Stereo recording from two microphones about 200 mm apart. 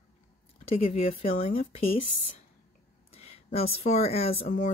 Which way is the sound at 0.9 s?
40° left (ahead or behind).